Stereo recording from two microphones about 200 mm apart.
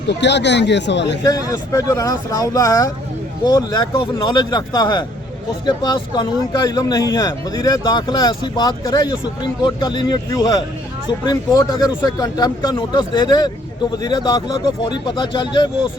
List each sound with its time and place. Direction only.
0.1 s speech: 60° left (ahead or behind)
1.2 s speech: 15° left (ahead or behind)